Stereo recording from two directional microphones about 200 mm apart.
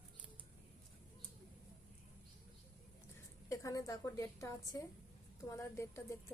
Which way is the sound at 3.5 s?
15° left (ahead or behind).